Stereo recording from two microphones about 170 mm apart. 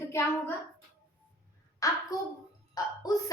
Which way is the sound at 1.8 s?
20° left (ahead or behind).